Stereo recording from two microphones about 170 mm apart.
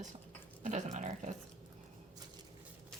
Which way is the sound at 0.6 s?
45° right (ahead or behind).